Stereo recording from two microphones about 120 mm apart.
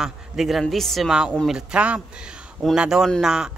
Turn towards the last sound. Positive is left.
turn(degrees=-5)  # may be behind; listen again after turning